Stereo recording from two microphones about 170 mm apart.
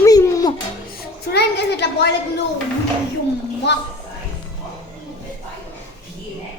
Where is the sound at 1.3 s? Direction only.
75° left (ahead or behind).